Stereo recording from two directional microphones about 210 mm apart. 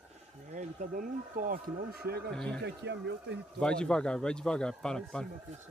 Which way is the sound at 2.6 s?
55° right (ahead or behind).